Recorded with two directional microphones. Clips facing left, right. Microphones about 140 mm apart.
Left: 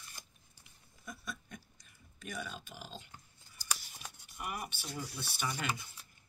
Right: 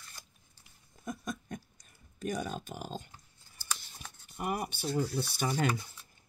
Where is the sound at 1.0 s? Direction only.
45° right (ahead or behind).